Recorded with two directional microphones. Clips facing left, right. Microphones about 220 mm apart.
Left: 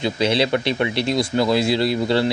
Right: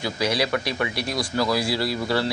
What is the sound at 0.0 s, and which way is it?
Speech, 25° left (ahead or behind).